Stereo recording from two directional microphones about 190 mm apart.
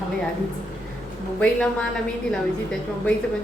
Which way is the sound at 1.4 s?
5° left (ahead or behind).